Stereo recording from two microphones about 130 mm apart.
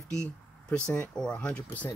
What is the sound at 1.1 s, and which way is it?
Speech, 5° left (ahead or behind).